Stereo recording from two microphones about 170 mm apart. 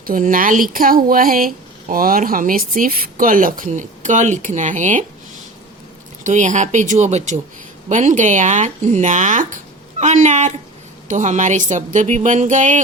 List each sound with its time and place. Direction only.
0.0 s speech: 55° right (ahead or behind)
6.2 s speech: 45° right (ahead or behind)